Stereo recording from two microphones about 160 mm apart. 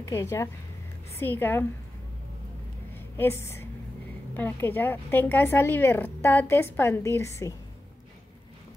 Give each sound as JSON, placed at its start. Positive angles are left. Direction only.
{"t": 0.0, "sound": "a woman's voice", "side_deg": 15}
{"t": 2.9, "sound": "a sound", "side_deg": 15}
{"t": 4.3, "sound": "a woman's voice", "side_deg": 10}